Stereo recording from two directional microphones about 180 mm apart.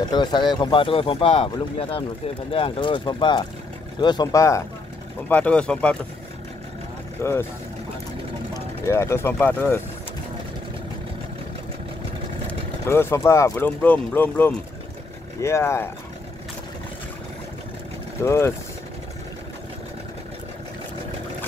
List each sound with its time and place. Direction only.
0.1 s speech: 25° left (ahead or behind)
5.3 s speech: 5° left (ahead or behind)
7.2 s speech: 15° left (ahead or behind)
8.8 s speech: 15° left (ahead or behind)
12.4 s speech: 15° left (ahead or behind)
18.2 s speech: 15° left (ahead or behind)